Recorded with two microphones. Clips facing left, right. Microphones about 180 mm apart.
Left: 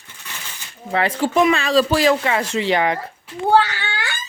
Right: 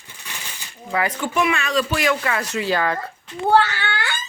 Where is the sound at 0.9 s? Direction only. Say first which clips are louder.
Left 4 dB; 30° left (ahead or behind); by 4.1 s 15° left (ahead or behind).